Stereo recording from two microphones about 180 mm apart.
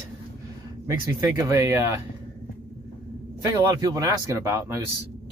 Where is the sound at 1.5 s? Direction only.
15° right (ahead or behind).